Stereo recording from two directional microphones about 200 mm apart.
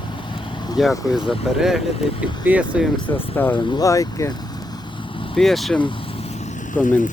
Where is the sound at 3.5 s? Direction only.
25° left (ahead or behind).